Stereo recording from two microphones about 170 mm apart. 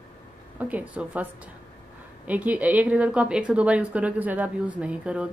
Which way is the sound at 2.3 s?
10° right (ahead or behind).